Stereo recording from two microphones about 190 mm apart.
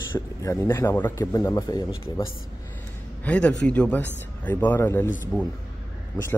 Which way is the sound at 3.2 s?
5° left (ahead or behind).